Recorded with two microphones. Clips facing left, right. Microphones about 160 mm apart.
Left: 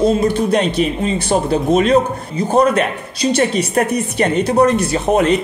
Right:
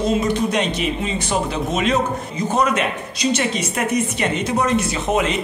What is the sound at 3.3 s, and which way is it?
A man's voice, 35° left (ahead or behind).